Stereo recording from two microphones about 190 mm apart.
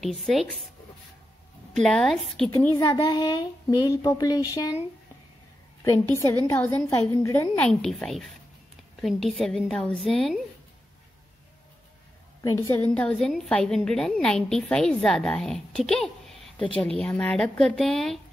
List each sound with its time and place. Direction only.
0.0 s a woman's voice: centre (ahead or behind)
1.8 s a woman's voice: 5° left (ahead or behind)
2.8 s speech: 25° left (ahead or behind)
5.9 s a woman's voice: 15° left (ahead or behind)
12.4 s a woman's voice: 15° left (ahead or behind)
16.5 s speech: 25° left (ahead or behind)
17.0 s a woman's voice: 10° left (ahead or behind)